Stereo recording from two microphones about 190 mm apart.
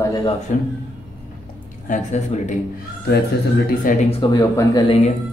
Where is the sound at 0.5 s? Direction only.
40° left (ahead or behind).